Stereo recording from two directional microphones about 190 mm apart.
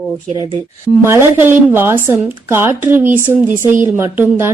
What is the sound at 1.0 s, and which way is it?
Speech, 10° right (ahead or behind).